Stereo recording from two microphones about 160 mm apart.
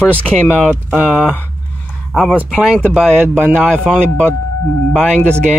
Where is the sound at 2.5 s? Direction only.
5° right (ahead or behind).